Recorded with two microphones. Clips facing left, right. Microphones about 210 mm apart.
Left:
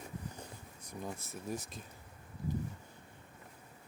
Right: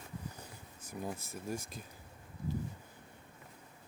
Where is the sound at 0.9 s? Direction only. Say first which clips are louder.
Right 2 dB; centre (ahead or behind).